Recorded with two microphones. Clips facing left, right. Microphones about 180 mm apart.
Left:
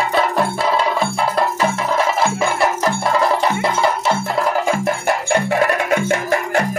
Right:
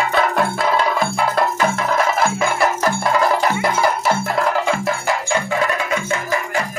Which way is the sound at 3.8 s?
Centre (ahead or behind).